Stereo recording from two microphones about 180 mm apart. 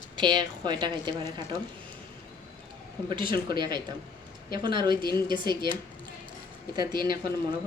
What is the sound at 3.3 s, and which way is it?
Speech, 25° right (ahead or behind).